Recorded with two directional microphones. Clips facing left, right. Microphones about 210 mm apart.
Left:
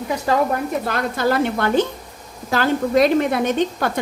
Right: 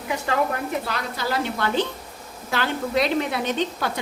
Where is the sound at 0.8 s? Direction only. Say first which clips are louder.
Left 8 dB; 50° left (ahead or behind).